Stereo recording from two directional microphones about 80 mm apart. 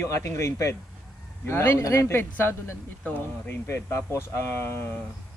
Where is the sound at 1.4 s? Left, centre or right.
Left.